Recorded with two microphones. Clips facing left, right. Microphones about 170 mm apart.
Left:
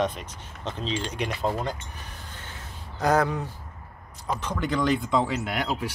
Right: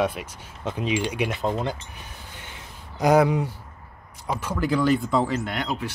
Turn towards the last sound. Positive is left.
turn(degrees=10)  # may be behind; listen again after turning